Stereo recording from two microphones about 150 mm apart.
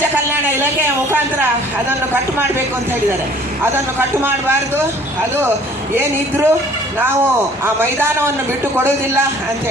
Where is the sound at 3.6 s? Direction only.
15° right (ahead or behind).